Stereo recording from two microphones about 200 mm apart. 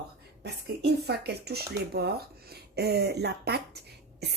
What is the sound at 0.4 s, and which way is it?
A woman's voice, 55° right (ahead or behind).